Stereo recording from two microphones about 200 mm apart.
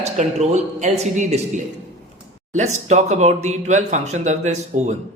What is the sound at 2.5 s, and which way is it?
Speech, 35° right (ahead or behind).